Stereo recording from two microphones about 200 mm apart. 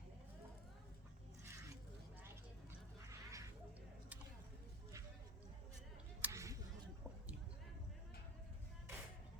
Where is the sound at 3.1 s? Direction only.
15° right (ahead or behind).